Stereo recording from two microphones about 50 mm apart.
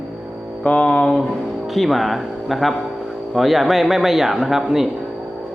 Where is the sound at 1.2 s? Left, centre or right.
Centre.